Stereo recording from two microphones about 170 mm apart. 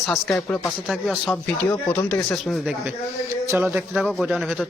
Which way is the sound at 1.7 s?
10° left (ahead or behind).